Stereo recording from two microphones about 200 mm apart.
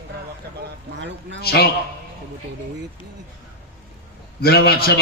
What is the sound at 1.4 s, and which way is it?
Speech, 50° left (ahead or behind).